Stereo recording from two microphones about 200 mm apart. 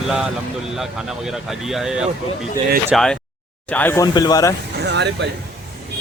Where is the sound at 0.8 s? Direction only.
Centre (ahead or behind); by 4.5 s 20° left (ahead or behind).